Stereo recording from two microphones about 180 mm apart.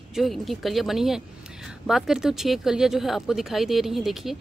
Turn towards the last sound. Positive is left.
turn(degrees=0)  # may be behind; listen again after turning